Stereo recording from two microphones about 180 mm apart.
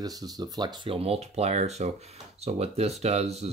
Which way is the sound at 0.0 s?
20° right (ahead or behind).